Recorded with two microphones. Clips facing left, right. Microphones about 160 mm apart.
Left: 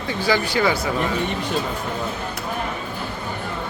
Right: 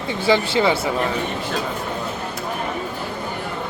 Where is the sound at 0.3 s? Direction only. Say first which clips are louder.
Right 3 dB; 25° right (ahead or behind).